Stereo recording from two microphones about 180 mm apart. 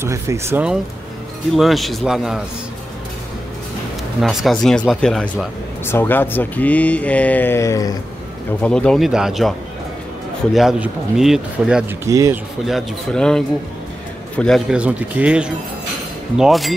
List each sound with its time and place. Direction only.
0.0 s speech: 15° right (ahead or behind)
1.5 s speech: centre (ahead or behind)
4.2 s speech: centre (ahead or behind); by 7.9 s 15° left (ahead or behind)
8.5 s speech: 5° left (ahead or behind)
10.5 s speech: 5° right (ahead or behind)
12.1 s speech: 20° right (ahead or behind)
12.6 s speech: centre (ahead or behind)